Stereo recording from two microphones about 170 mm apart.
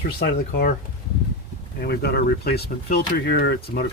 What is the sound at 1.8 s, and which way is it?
Speech, 70° left (ahead or behind).